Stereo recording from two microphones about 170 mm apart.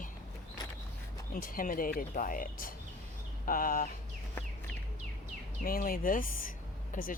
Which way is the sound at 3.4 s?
55° left (ahead or behind).